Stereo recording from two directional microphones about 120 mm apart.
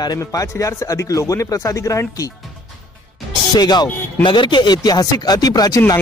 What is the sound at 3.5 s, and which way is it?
Speech, 35° left (ahead or behind).